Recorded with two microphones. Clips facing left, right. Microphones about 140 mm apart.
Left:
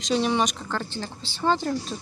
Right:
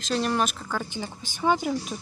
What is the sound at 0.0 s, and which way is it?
Speech, centre (ahead or behind).